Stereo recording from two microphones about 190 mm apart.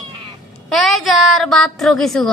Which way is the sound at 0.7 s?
Centre (ahead or behind).